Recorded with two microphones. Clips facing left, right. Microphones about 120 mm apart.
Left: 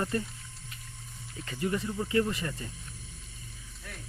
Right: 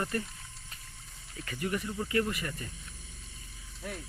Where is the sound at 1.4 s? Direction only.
20° left (ahead or behind).